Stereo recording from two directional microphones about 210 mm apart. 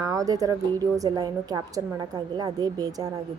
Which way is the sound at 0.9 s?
20° right (ahead or behind).